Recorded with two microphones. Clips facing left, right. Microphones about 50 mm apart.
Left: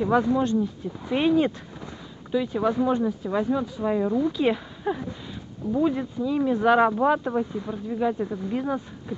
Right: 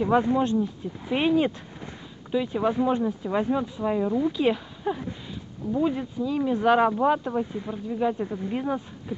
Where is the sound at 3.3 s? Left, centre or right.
Right.